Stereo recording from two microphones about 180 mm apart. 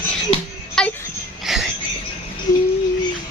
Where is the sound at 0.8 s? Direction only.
5° left (ahead or behind).